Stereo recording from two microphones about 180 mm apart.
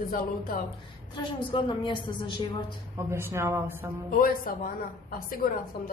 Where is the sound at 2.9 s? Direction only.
15° right (ahead or behind).